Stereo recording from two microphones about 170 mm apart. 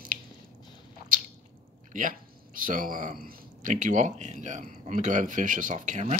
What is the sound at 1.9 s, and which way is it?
Speech, 50° right (ahead or behind).